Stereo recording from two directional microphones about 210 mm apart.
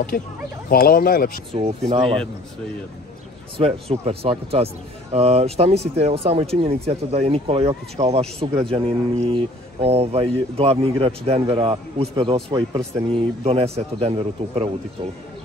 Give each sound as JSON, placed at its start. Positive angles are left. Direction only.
{"t": 0.1, "sound": "speech", "side_deg": 40}
{"t": 1.9, "sound": "speech", "side_deg": -25}
{"t": 3.5, "sound": "speech", "side_deg": -30}